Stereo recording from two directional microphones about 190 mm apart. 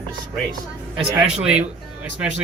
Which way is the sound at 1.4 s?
5° right (ahead or behind).